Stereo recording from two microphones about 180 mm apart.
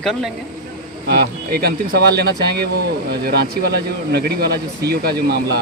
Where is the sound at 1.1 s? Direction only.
60° right (ahead or behind).